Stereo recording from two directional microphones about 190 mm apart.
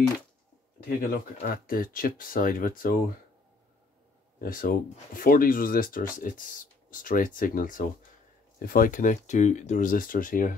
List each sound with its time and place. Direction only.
0.8 s speech: 50° left (ahead or behind)
4.5 s speech: 45° left (ahead or behind)